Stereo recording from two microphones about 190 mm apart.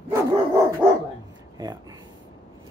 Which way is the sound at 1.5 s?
20° right (ahead or behind).